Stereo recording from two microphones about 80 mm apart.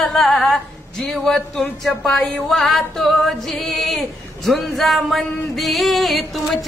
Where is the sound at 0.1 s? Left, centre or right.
Centre.